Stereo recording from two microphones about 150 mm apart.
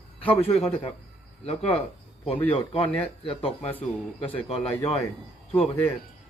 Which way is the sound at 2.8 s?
40° left (ahead or behind).